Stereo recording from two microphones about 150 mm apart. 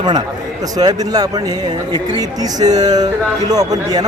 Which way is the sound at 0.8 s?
25° right (ahead or behind).